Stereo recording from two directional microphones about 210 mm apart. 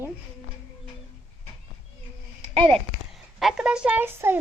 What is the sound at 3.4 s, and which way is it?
Speech, 5° right (ahead or behind).